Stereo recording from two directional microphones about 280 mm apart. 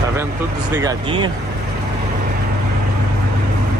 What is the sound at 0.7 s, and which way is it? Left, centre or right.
Speech, centre.